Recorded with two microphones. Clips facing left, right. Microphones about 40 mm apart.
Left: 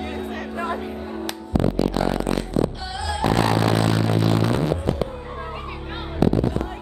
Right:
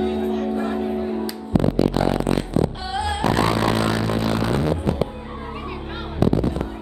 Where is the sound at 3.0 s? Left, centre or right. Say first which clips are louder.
Right 1 dB; right.